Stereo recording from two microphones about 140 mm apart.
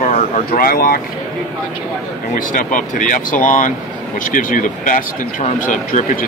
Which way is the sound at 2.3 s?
70° left (ahead or behind).